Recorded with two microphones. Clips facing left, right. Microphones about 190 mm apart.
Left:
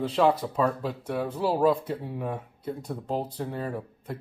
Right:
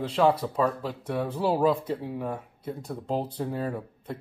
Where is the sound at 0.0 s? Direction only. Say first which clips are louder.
Even; 10° left (ahead or behind).